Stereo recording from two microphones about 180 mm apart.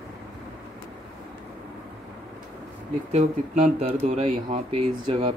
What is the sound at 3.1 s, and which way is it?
Speech, 40° right (ahead or behind).